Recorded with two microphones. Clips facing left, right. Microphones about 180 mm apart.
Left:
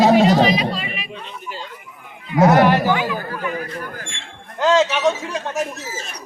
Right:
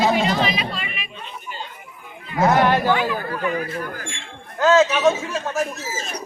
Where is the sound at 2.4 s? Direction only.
80° left.